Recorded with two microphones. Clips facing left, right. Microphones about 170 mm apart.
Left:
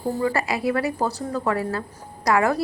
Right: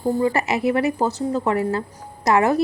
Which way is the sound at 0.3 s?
25° right (ahead or behind).